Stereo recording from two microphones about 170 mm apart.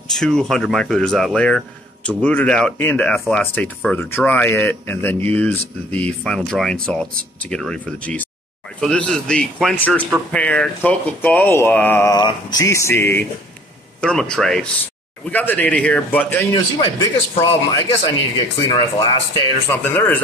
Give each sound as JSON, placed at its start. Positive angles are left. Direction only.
{"t": 0.1, "sound": "speech", "side_deg": 5}
{"t": 16.5, "sound": "speech", "side_deg": 20}
{"t": 19.7, "sound": "speech", "side_deg": 10}